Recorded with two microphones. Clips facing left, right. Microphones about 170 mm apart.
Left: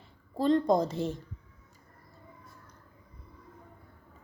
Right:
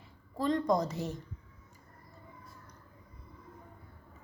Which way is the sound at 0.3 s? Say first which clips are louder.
Left 4 dB; 30° left (ahead or behind).